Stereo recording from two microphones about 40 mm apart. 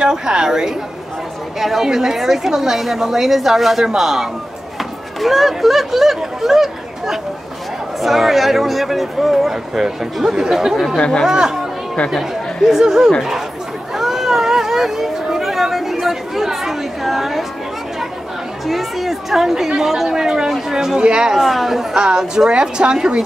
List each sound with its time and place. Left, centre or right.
0.0 s a woman's voice: centre
11.0 s speech: left
11.2 s a woman's voice: centre
12.1 s a woman's voice: centre
13.9 s a sound: centre
18.7 s a woman's voice: centre; by 21.4 s right
21.4 s speech: centre
21.9 s speech: centre